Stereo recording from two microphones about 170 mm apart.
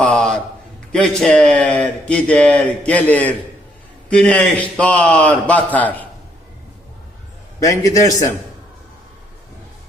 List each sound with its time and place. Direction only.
0.0 s a sound: 5° left (ahead or behind)
0.9 s a man's voice: 5° left (ahead or behind)
7.6 s a man's voice: 20° left (ahead or behind)